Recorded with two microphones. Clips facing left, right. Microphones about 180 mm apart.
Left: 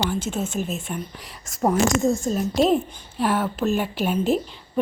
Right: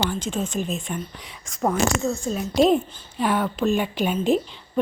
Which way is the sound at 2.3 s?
Centre (ahead or behind).